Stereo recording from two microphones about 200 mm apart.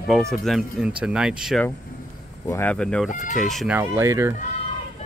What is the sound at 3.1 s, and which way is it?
Speech, 40° left (ahead or behind).